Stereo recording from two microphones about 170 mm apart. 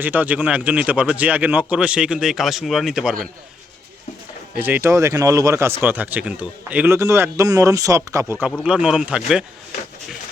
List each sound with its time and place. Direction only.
0.0 s a man's voice: 10° right (ahead or behind)
4.6 s a man's voice: 15° right (ahead or behind)